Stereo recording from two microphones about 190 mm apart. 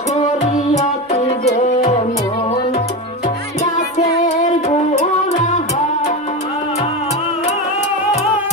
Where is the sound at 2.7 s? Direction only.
40° left (ahead or behind).